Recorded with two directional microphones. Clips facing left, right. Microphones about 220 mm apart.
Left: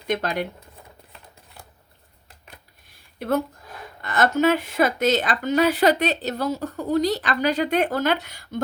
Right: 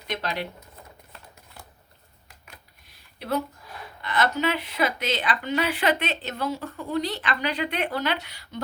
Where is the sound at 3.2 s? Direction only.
50° left (ahead or behind).